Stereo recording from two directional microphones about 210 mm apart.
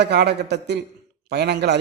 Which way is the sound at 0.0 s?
55° right (ahead or behind).